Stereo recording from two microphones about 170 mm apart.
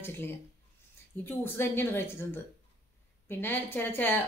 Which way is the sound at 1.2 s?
15° left (ahead or behind).